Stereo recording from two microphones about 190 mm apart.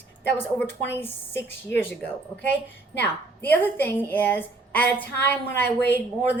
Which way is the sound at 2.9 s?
60° left (ahead or behind).